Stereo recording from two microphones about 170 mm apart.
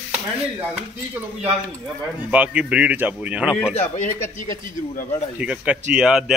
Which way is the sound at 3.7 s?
45° left (ahead or behind).